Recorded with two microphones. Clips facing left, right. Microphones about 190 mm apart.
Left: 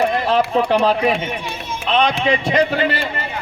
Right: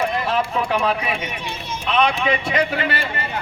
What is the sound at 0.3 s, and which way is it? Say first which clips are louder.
Speech: left 5 dB; 35° left (ahead or behind).